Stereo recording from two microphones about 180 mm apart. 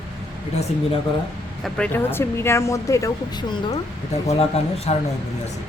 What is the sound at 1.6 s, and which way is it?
Speech, 5° left (ahead or behind).